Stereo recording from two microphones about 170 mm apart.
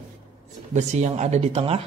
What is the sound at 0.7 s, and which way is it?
Speech, 40° right (ahead or behind).